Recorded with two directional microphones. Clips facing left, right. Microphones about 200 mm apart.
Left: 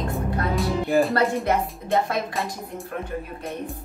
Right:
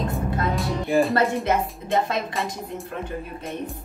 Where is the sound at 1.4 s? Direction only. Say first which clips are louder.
Even; 20° right (ahead or behind).